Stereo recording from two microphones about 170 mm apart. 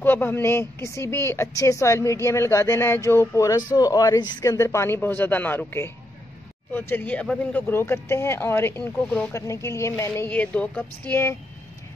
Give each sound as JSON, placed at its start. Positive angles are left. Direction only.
{"t": 0.0, "sound": "a woman's voice", "side_deg": 10}